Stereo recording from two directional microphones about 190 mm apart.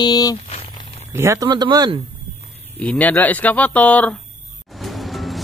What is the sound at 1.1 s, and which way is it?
Speech, 15° right (ahead or behind).